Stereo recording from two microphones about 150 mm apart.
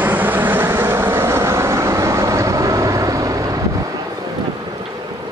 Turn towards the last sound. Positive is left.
turn(degrees=-25)  # may be behind; listen again after turning